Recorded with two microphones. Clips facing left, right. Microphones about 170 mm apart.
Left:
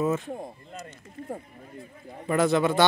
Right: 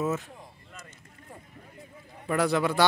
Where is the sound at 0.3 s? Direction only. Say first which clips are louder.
Left 13 dB; 50° left (ahead or behind).